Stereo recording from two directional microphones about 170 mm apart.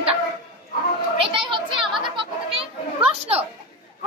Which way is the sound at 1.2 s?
30° right (ahead or behind).